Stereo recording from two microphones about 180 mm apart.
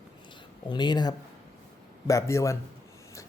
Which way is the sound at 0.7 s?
25° left (ahead or behind).